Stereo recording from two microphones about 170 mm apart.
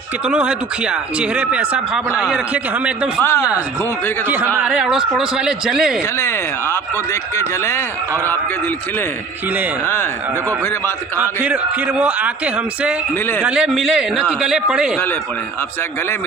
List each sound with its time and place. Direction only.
0.3 s a man's voice: 5° right (ahead or behind)
4.6 s a man's voice: 5° right (ahead or behind)
6.1 s speech: 15° left (ahead or behind)
9.8 s speech: 15° left (ahead or behind)
11.2 s a man's voice: 10° right (ahead or behind)